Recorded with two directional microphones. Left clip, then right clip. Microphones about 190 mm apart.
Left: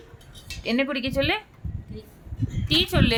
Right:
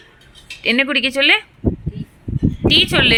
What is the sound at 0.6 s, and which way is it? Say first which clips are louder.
Speech: right 10 dB; 15° right (ahead or behind).